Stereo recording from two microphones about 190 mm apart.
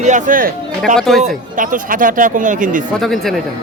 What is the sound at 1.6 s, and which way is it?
Speech, 45° right (ahead or behind).